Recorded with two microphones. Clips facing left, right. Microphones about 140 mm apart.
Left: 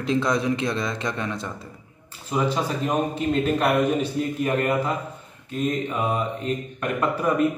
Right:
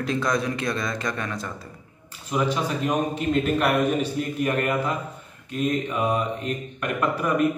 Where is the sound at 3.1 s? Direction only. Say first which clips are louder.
Even; 10° right (ahead or behind).